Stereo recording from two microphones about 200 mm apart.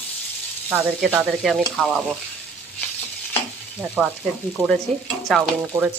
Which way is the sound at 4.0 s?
5° right (ahead or behind).